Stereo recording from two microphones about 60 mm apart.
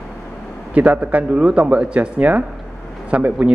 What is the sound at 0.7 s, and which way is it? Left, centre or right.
Speech, right.